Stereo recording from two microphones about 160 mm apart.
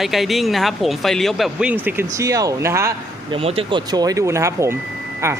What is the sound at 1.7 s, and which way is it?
Speech, 10° right (ahead or behind).